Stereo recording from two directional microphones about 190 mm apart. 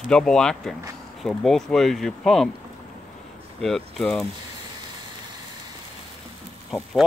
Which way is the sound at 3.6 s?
Centre (ahead or behind).